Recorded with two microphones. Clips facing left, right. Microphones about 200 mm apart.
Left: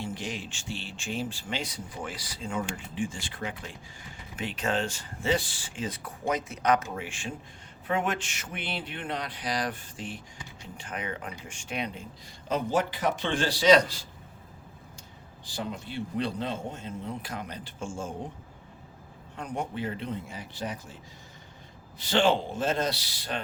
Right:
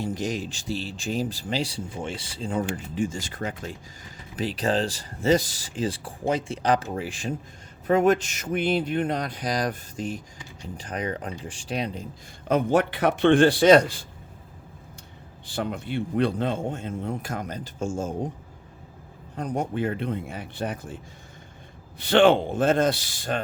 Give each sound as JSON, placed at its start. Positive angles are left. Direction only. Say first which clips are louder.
{"t": 0.0, "sound": "speech", "louder": "right 7 dB", "side_deg": -40}
{"t": 12.5, "sound": "speech", "louder": "right 6 dB", "side_deg": -60}
{"t": 15.4, "sound": "a man's voice", "louder": "right 6 dB", "side_deg": -60}
{"t": 19.4, "sound": "a man's voice", "louder": "right 6 dB", "side_deg": -40}